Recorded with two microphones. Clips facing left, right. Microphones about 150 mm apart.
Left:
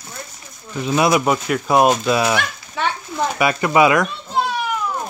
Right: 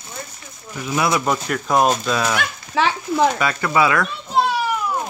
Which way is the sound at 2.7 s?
90° right.